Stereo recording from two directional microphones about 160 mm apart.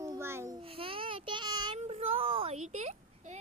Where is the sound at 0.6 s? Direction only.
35° right (ahead or behind).